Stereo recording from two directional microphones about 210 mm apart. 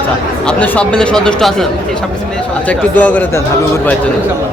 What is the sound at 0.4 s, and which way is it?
Speech, 5° left (ahead or behind).